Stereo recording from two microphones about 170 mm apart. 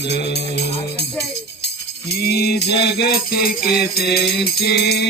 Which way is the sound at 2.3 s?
75° left (ahead or behind).